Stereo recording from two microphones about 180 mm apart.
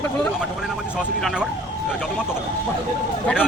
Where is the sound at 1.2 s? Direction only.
5° right (ahead or behind).